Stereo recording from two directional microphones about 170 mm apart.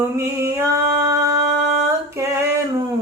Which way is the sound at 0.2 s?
15° right (ahead or behind).